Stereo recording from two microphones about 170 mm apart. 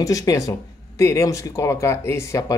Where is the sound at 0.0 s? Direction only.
20° left (ahead or behind).